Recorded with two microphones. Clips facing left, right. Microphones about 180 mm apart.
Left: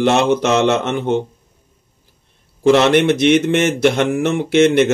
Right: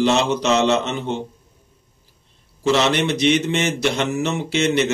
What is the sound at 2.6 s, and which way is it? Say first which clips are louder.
A man's voice: left 7 dB; 55° left (ahead or behind).